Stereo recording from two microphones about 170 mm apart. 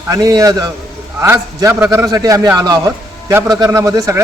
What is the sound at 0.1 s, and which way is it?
A man's voice, 20° right (ahead or behind).